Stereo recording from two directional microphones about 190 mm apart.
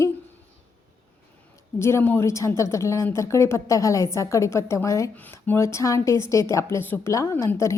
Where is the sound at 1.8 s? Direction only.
15° left (ahead or behind).